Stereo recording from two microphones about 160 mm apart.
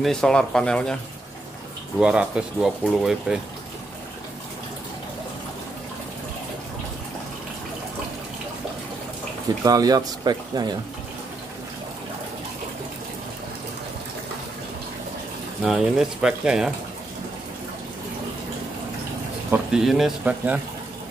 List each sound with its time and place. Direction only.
0.0 s speech: 5° left (ahead or behind)
2.0 s speech: 5° right (ahead or behind)
9.7 s speech: 25° right (ahead or behind)
15.6 s speech: centre (ahead or behind)
19.5 s speech: 5° right (ahead or behind)